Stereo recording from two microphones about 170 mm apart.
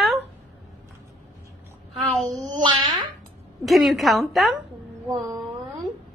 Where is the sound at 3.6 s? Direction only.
Centre (ahead or behind).